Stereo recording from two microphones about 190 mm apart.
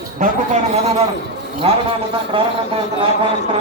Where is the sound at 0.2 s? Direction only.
35° right (ahead or behind).